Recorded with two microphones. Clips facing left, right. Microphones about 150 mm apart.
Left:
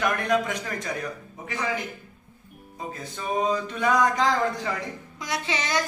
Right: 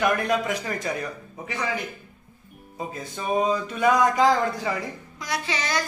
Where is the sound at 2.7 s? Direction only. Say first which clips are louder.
Right 2 dB; 10° right (ahead or behind).